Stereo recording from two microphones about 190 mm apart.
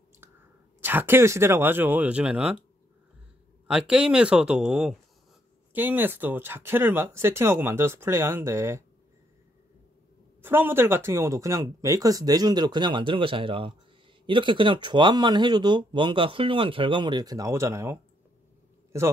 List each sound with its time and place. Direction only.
0.7 s speech: 10° right (ahead or behind)
3.6 s speech: 5° right (ahead or behind)
10.4 s speech: 10° right (ahead or behind)